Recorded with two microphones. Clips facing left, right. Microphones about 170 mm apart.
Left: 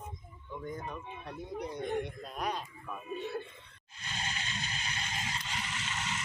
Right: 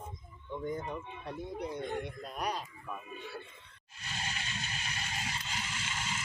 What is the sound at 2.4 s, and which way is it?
Speech, 5° right (ahead or behind).